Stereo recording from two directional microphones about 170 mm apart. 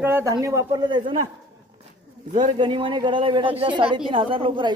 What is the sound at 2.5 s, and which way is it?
Speech, 30° right (ahead or behind).